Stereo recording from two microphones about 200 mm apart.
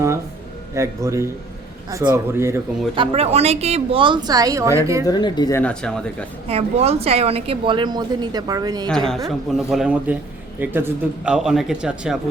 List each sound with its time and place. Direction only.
0.7 s speech: 15° right (ahead or behind)
2.9 s a woman's voice: 25° right (ahead or behind)
5.0 s speech: 20° left (ahead or behind); by 6.2 s 5° left (ahead or behind)
6.5 s a woman's voice: 30° right (ahead or behind)
8.9 s speech: centre (ahead or behind)